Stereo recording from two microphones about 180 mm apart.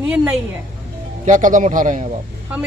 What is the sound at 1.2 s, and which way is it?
Speech, 45° right (ahead or behind).